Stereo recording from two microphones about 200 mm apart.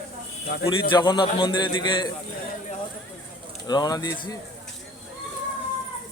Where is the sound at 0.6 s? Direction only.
25° left (ahead or behind).